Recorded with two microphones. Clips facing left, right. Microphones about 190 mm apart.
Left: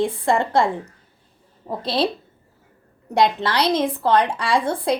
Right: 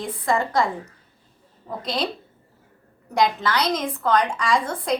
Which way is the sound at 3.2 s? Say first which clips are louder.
Left 2 dB; 30° left (ahead or behind).